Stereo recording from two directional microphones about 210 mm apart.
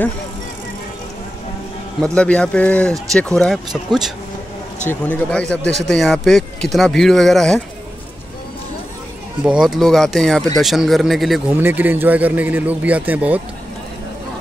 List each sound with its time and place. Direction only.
2.1 s speech: 5° left (ahead or behind)
9.4 s speech: 5° right (ahead or behind)